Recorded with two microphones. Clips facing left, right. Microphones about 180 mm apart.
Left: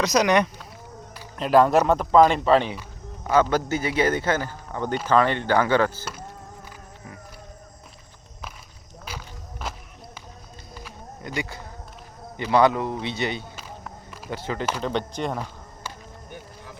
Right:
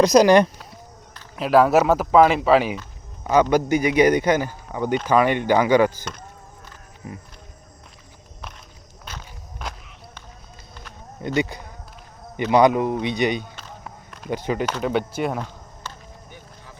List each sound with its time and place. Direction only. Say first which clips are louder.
0.0 s speech: right 7 dB; 35° right (ahead or behind)
1.4 s speech: right 2 dB; 5° right (ahead or behind)
9.0 s walk: left 1 dB; 5° left (ahead or behind)
11.3 s speech: right 8 dB; 20° right (ahead or behind)
15.9 s music: even; 10° left (ahead or behind)